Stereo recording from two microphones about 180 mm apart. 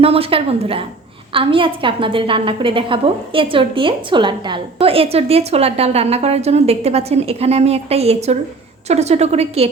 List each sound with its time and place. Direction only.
0.0 s a woman's voice: 30° right (ahead or behind)